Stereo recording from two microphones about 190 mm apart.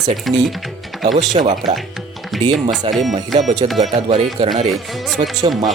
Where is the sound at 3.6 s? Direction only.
30° right (ahead or behind).